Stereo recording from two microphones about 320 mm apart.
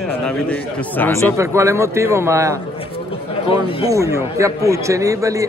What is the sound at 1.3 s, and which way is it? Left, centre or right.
Speech, centre.